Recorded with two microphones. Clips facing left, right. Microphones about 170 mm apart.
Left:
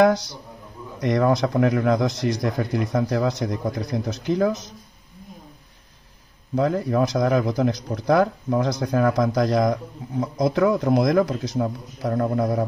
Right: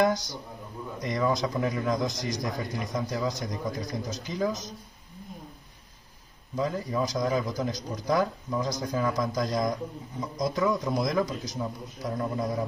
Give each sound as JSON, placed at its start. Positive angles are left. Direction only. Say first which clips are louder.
{"t": 0.1, "sound": "speech", "louder": "left 6 dB", "side_deg": 70}
{"t": 6.5, "sound": "speech", "louder": "left 8 dB", "side_deg": 65}